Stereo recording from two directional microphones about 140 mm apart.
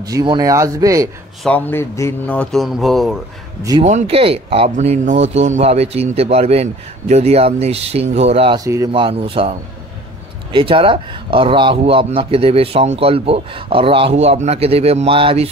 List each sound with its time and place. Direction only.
0.0 s speech: 30° right (ahead or behind)
1.4 s speech: 10° left (ahead or behind)
2.5 s speech: centre (ahead or behind)
3.8 s speech: 55° right (ahead or behind)
4.2 s speech: 40° right (ahead or behind)
4.6 s speech: 60° right (ahead or behind)
8.5 s speech: 25° right (ahead or behind)
8.9 s a man's voice: 40° right (ahead or behind)